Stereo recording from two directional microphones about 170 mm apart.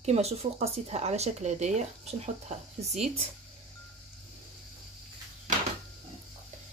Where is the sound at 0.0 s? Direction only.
40° right (ahead or behind).